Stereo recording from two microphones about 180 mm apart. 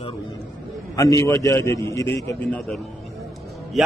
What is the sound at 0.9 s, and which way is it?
A man's voice, 15° left (ahead or behind).